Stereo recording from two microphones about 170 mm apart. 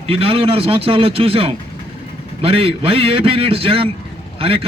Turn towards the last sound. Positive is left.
turn(degrees=-35)  # may be behind; listen again after turning